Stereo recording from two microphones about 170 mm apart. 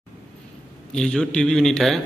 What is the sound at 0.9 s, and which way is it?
A man's voice, 5° left (ahead or behind).